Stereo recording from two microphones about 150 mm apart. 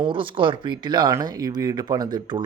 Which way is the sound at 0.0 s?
35° right (ahead or behind).